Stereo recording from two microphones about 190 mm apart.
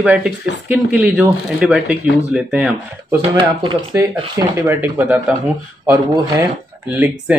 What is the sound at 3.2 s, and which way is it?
Speech, 25° right (ahead or behind).